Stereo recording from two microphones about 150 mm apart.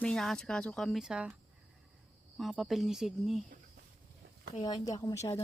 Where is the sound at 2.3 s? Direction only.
Centre (ahead or behind).